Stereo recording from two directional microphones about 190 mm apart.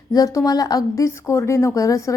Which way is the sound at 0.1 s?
20° left (ahead or behind).